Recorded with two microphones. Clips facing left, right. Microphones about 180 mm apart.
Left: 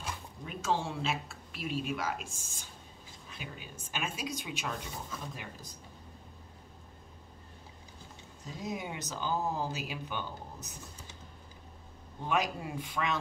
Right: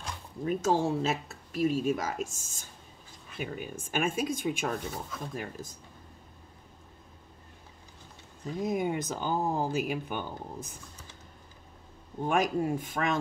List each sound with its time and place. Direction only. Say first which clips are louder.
0.5 s speech: right 7 dB; 45° right (ahead or behind)
8.5 s speech: right 9 dB; 50° right (ahead or behind)
12.2 s speech: right 5 dB; 45° right (ahead or behind)